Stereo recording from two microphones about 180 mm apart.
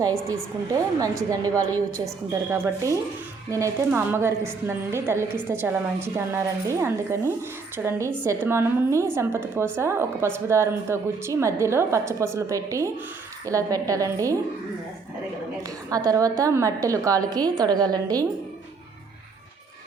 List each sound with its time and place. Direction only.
0.7 s a woman's voice: 20° right (ahead or behind)
15.9 s a woman's voice: 20° right (ahead or behind)